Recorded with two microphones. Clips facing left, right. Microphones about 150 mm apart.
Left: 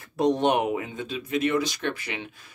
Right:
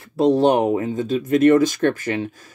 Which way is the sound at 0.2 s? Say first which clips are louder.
Right 6 dB; 35° right (ahead or behind).